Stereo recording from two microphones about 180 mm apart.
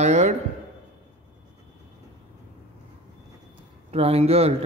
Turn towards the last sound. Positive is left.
turn(degrees=-35)  # may be behind; listen again after turning